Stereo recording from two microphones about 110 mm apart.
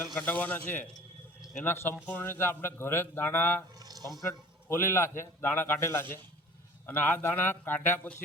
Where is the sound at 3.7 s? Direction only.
35° right (ahead or behind).